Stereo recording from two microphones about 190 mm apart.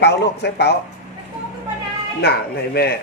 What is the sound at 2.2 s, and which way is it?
Speech, 55° left (ahead or behind).